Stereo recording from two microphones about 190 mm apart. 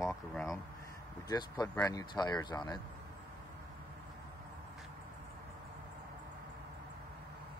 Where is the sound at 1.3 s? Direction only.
20° left (ahead or behind).